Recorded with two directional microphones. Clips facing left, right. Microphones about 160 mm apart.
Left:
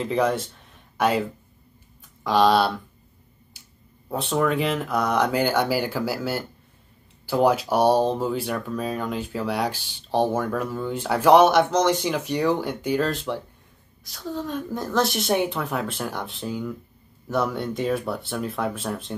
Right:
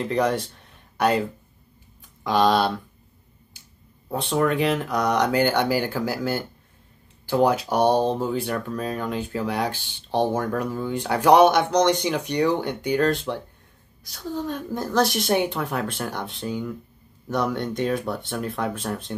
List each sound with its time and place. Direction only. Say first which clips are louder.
0.0 s speech: even; centre (ahead or behind)
2.2 s speech: left 1 dB; centre (ahead or behind)
4.1 s speech: right 1 dB; centre (ahead or behind)